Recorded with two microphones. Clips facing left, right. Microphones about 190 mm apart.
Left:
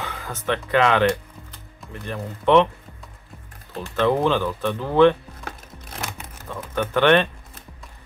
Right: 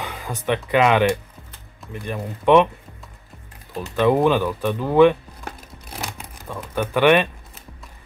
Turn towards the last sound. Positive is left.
turn(degrees=-10)  # may be behind; listen again after turning